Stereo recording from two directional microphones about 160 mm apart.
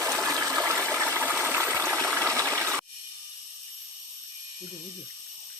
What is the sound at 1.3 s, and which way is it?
Water, 10° right (ahead or behind).